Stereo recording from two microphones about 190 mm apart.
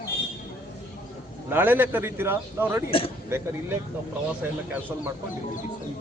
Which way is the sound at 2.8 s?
30° left (ahead or behind).